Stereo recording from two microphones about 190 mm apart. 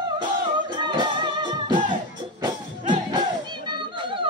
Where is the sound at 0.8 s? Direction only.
25° right (ahead or behind).